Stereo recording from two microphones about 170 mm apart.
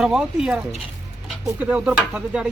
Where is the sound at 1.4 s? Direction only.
10° right (ahead or behind).